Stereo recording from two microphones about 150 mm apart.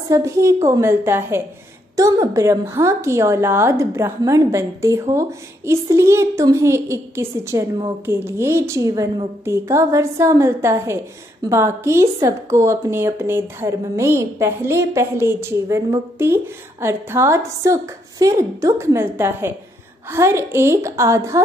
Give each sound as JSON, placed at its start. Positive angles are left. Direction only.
{"t": 0.1, "sound": "a woman's voice", "side_deg": -20}